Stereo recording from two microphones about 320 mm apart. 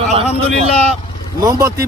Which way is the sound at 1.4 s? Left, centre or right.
Centre.